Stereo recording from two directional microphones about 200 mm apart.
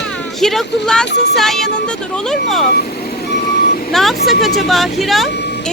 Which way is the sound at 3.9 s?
Centre (ahead or behind).